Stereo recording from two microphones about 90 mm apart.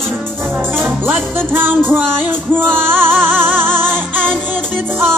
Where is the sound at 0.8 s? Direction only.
25° right (ahead or behind).